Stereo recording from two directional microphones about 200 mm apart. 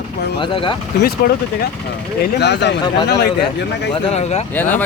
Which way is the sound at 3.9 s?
30° left (ahead or behind).